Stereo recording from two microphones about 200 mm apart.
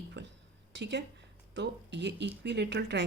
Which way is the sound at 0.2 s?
60° right (ahead or behind).